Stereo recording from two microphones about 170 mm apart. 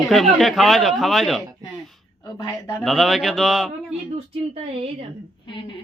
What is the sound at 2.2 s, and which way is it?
Speech, 25° left (ahead or behind).